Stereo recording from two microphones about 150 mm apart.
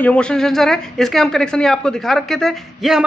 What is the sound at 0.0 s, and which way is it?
A man's voice, 5° left (ahead or behind).